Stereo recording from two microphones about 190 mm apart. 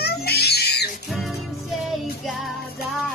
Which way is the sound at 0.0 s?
55° left (ahead or behind).